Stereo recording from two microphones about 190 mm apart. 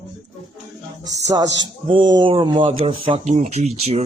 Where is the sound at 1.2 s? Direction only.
20° right (ahead or behind).